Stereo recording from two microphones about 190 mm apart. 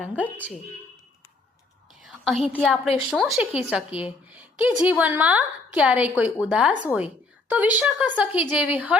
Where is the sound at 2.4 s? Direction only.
5° right (ahead or behind).